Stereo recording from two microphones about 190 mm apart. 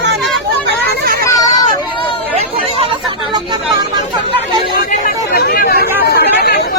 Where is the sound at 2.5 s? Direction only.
30° right (ahead or behind).